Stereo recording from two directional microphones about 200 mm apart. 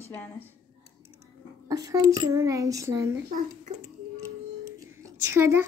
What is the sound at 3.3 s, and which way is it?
Speech, 40° right (ahead or behind).